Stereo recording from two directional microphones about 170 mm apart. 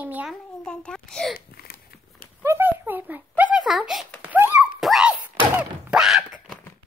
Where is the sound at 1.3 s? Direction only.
65° left (ahead or behind).